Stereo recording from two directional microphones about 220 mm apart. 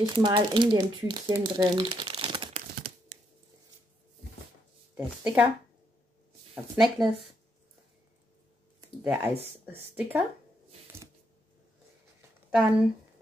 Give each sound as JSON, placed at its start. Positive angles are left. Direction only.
{"t": 0.0, "sound": "speech", "side_deg": -20}
{"t": 4.9, "sound": "speech", "side_deg": -10}
{"t": 6.5, "sound": "speech", "side_deg": 0}
{"t": 9.0, "sound": "speech", "side_deg": -10}
{"t": 12.2, "sound": "a sound", "side_deg": -5}